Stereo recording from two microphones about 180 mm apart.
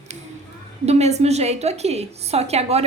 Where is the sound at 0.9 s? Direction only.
40° right (ahead or behind).